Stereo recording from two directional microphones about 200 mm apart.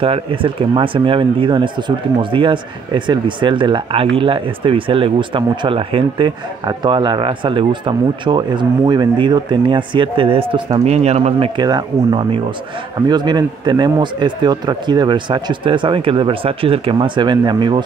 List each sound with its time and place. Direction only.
0.0 s speech: 25° right (ahead or behind)